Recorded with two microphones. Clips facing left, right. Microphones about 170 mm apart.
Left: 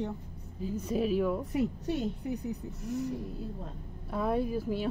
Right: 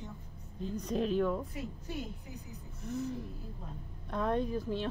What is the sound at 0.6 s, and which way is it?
Speech, 5° left (ahead or behind).